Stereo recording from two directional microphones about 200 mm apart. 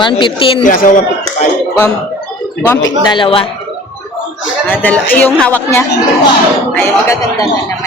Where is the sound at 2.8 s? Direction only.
20° left (ahead or behind).